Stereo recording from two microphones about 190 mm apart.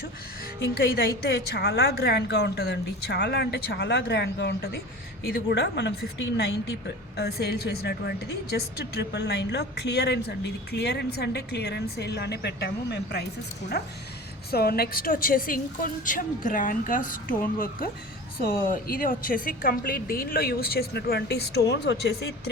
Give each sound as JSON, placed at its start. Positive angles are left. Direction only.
{"t": 0.6, "sound": "a woman's voice", "side_deg": 55}